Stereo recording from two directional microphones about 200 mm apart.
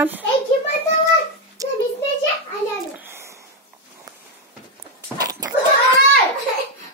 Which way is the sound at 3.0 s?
10° right (ahead or behind).